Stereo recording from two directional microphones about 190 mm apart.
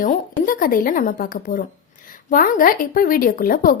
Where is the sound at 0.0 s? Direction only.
45° left (ahead or behind).